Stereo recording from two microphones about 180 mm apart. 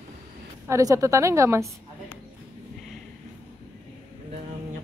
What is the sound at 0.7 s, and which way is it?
Speech, 15° right (ahead or behind).